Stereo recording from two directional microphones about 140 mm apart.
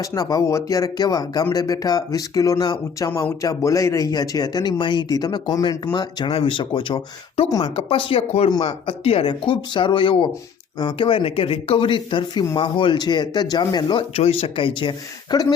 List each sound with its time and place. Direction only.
0.0 s speech: 25° left (ahead or behind)
3.1 s speech: 15° left (ahead or behind)
3.4 s speech: 25° left (ahead or behind)
14.1 s speech: 45° left (ahead or behind); by 15.5 s 30° left (ahead or behind)